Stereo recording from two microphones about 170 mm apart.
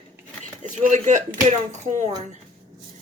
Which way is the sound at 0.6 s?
50° right (ahead or behind).